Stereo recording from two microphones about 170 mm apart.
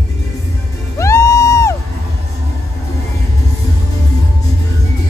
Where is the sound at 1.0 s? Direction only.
15° left (ahead or behind).